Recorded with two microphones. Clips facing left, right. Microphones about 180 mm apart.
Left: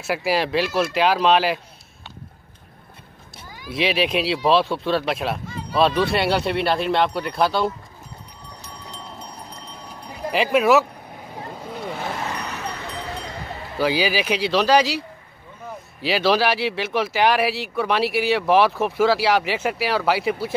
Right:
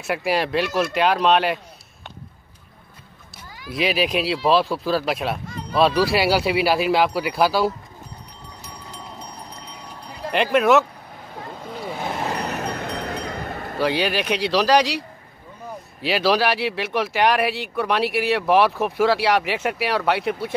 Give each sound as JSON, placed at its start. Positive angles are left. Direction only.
{"t": 0.0, "sound": "speech", "side_deg": 0}
{"t": 3.6, "sound": "speech", "side_deg": 0}
{"t": 10.3, "sound": "speech", "side_deg": 5}
{"t": 11.5, "sound": "vehicle", "side_deg": 5}
{"t": 12.5, "sound": "a sound", "side_deg": -55}
{"t": 13.7, "sound": "speech", "side_deg": 0}